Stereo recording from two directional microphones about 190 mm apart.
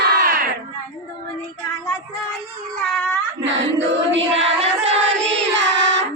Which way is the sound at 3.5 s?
75° right (ahead or behind).